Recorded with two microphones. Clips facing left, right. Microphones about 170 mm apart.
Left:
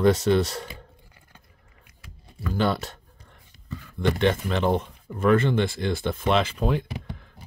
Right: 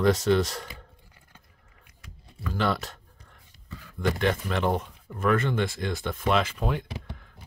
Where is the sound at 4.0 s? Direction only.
25° left (ahead or behind).